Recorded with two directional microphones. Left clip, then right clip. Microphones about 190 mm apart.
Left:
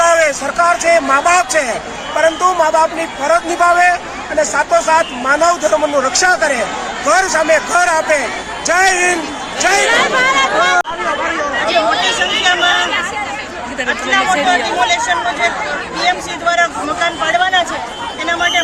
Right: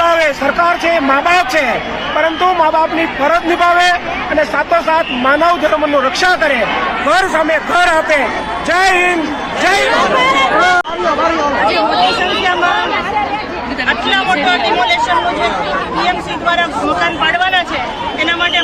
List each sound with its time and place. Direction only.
0.0 s a man's voice: 5° left (ahead or behind)
10.2 s speech: 40° left (ahead or behind)
14.1 s speech: 15° left (ahead or behind)